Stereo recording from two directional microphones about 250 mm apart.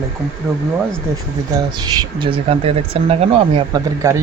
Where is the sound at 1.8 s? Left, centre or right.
Centre.